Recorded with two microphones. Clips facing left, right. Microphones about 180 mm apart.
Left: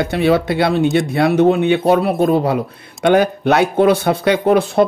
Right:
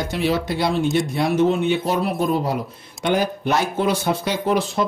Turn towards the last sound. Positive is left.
turn(degrees=60)  # may be behind; listen again after turning